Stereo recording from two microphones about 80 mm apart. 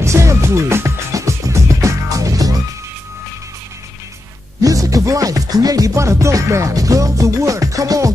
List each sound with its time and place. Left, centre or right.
0.0 s music: right
4.6 s music: right